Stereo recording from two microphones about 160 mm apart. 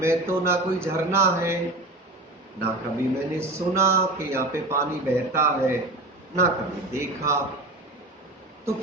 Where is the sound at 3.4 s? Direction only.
15° right (ahead or behind).